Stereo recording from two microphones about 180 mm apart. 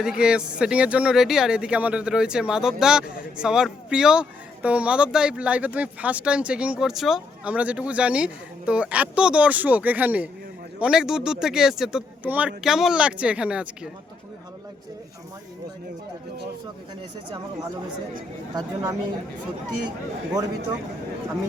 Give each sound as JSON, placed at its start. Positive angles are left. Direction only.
{"t": 0.0, "sound": "speech", "side_deg": -5}
{"t": 18.5, "sound": "speech", "side_deg": -15}